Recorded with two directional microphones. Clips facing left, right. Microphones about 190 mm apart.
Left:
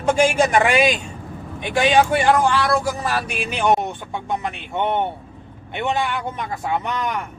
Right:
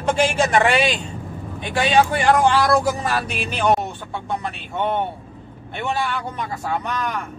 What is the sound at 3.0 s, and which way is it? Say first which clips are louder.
Speech: even; 10° left (ahead or behind).